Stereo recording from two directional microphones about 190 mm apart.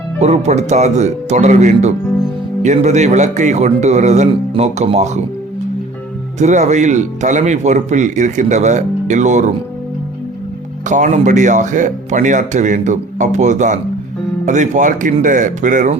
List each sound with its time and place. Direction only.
0.2 s speech: 35° right (ahead or behind)
6.4 s speech: 40° right (ahead or behind)
10.8 s speech: 40° right (ahead or behind)